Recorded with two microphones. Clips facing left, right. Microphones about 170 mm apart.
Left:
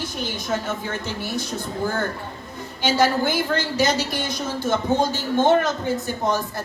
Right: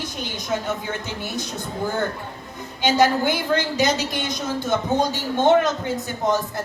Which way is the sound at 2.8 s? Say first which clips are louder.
Right 1 dB; 20° right (ahead or behind).